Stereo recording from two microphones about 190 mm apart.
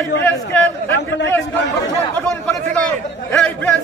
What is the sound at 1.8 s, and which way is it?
A man's voice, 10° left (ahead or behind).